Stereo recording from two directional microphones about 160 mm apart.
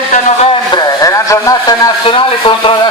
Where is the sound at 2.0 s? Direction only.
35° left (ahead or behind).